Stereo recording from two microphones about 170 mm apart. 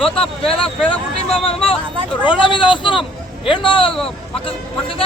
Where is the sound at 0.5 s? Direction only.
35° left (ahead or behind).